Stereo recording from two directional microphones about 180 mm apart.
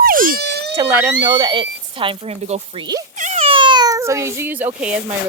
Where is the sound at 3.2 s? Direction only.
40° right (ahead or behind).